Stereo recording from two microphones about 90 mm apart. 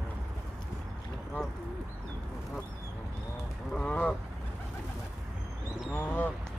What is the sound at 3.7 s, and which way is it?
Boat, 10° left (ahead or behind).